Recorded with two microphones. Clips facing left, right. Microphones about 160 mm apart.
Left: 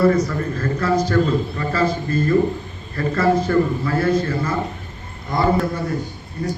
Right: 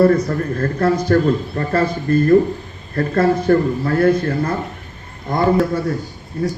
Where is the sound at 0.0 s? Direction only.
55° right (ahead or behind).